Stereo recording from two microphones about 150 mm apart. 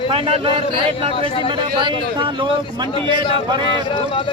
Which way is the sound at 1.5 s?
35° right (ahead or behind).